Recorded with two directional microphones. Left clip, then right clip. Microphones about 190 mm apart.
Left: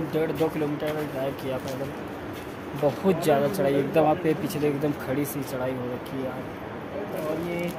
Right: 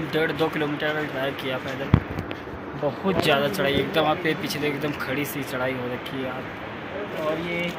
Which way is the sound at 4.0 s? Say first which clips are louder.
Left 2 dB; 45° left (ahead or behind).